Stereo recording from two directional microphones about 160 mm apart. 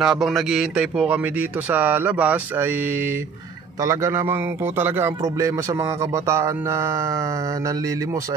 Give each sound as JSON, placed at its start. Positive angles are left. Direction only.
{"t": 0.0, "sound": "a man's voice", "side_deg": 0}